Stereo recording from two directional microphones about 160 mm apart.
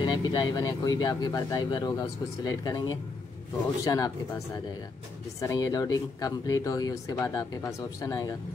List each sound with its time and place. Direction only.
0.0 s speech: 25° left (ahead or behind)
5.4 s speech: 20° left (ahead or behind)